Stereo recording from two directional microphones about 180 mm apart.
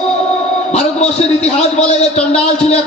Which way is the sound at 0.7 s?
35° left (ahead or behind).